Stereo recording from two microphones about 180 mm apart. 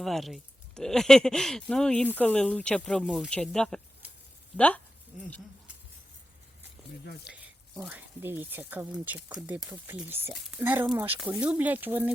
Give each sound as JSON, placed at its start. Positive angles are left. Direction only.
{"t": 0.0, "sound": "speech", "side_deg": 0}
{"t": 7.3, "sound": "speech", "side_deg": -5}